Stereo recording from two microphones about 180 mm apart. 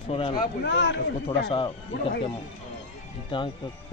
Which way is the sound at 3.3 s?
30° left (ahead or behind).